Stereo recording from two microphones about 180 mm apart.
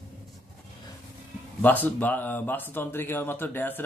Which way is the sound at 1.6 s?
10° left (ahead or behind).